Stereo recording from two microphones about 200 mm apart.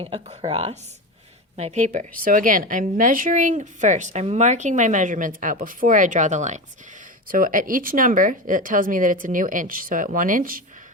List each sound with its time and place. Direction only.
0.0 s speech: 30° right (ahead or behind)